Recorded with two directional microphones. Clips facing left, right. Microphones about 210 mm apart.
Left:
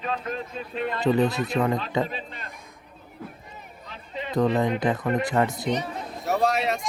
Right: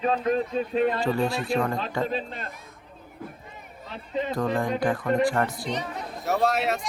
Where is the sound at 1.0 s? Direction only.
20° left (ahead or behind).